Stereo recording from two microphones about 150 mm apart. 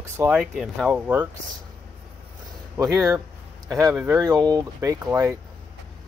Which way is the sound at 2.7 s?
20° right (ahead or behind).